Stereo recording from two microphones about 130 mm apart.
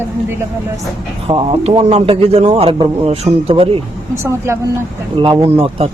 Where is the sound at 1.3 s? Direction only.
40° right (ahead or behind).